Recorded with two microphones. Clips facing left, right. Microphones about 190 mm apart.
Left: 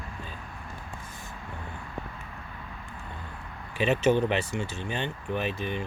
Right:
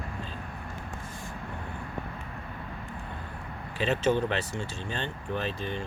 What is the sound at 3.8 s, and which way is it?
Speech, 15° left (ahead or behind).